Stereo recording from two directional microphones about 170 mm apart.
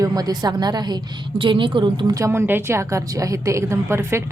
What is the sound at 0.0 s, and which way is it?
A woman's voice, 20° right (ahead or behind).